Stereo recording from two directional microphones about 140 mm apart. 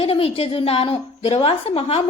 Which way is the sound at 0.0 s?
45° left (ahead or behind).